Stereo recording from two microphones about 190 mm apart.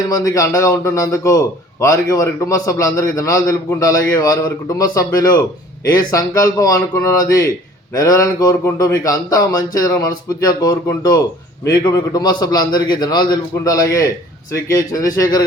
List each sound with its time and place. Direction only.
0.1 s a man's voice: 20° left (ahead or behind)